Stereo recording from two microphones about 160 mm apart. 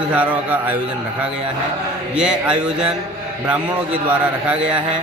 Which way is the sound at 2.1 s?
5° right (ahead or behind).